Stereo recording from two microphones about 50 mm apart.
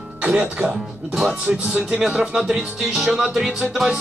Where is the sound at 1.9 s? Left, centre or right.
Centre.